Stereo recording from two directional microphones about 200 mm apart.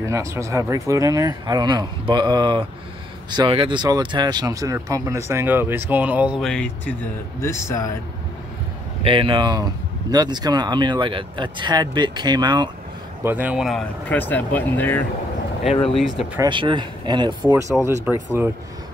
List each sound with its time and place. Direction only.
0.0 s speech: 15° right (ahead or behind); by 7.9 s 15° left (ahead or behind)
9.0 s speech: 25° right (ahead or behind)
13.2 s speech: 10° right (ahead or behind); by 15.0 s 10° left (ahead or behind)
15.7 s speech: 30° left (ahead or behind)
16.0 s speech: centre (ahead or behind)
16.3 s speech: 25° right (ahead or behind)